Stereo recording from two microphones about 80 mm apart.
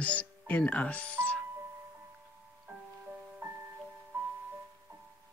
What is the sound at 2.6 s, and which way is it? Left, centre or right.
Music, centre.